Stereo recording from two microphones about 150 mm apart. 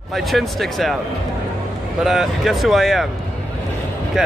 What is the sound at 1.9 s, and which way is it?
Speech, centre (ahead or behind).